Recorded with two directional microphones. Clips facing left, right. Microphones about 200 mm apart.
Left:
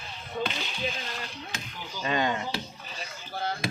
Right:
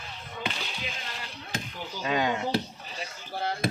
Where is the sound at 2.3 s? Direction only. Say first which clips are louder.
Right 4 dB; 70° right (ahead or behind).